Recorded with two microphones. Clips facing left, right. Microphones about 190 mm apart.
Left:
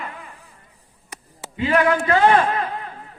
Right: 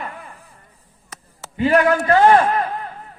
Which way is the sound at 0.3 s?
15° left (ahead or behind).